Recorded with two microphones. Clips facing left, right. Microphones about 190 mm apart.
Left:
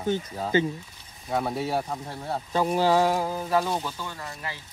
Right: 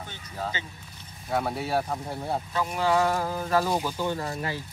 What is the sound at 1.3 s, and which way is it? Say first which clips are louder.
Speech: even; centre (ahead or behind).